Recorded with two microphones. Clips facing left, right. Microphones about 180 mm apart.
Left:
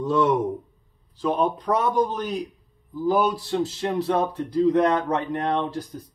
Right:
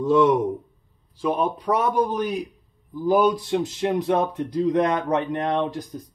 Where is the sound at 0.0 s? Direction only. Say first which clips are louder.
Right 3 dB; 10° right (ahead or behind).